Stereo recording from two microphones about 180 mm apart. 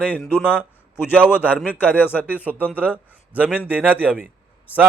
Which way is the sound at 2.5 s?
10° left (ahead or behind).